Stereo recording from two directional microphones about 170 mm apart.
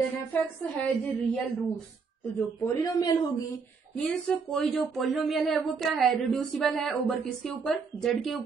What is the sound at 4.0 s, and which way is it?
Speech, centre (ahead or behind).